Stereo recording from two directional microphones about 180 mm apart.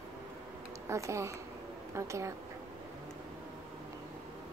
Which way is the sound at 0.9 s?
15° right (ahead or behind).